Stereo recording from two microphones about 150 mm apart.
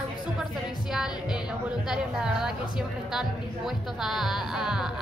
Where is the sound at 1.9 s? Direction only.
5° right (ahead or behind).